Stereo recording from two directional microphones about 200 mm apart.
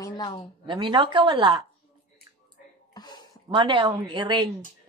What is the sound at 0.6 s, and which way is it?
Speech, 25° right (ahead or behind).